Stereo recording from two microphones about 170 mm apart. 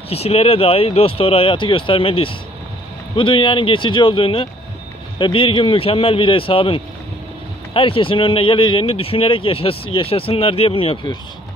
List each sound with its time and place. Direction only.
0.1 s speech: 35° left (ahead or behind)